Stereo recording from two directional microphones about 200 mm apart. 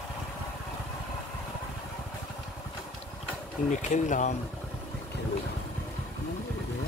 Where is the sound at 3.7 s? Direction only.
35° left (ahead or behind).